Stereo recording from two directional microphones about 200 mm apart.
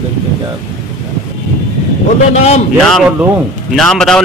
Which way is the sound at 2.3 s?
35° left (ahead or behind).